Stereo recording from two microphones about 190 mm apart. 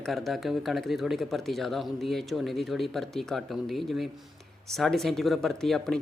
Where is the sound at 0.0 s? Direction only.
Centre (ahead or behind).